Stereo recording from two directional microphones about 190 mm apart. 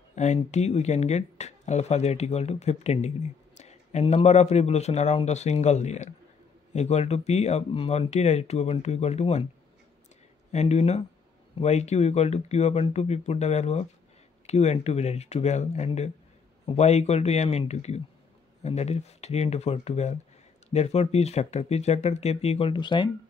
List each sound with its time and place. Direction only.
0.1 s speech: 40° left (ahead or behind)
10.5 s speech: 35° left (ahead or behind)